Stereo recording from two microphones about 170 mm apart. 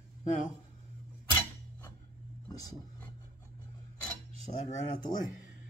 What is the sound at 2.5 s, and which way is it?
Speech, 20° left (ahead or behind).